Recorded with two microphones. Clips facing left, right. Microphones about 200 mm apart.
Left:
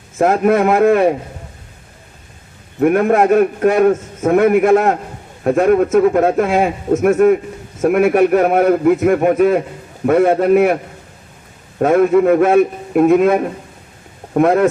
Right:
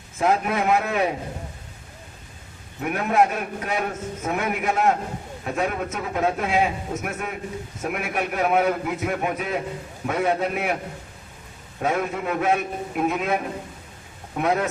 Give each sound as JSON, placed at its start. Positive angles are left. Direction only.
{"t": 0.2, "sound": "a man's voice", "side_deg": 50}
{"t": 2.8, "sound": "a man's voice", "side_deg": 50}
{"t": 11.8, "sound": "a man's voice", "side_deg": 50}